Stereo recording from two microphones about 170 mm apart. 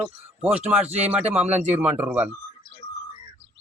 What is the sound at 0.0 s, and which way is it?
A man's voice, 10° right (ahead or behind).